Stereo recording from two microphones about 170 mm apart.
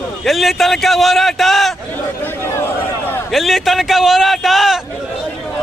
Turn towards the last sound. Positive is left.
turn(degrees=0)  # may be behind; listen again after turning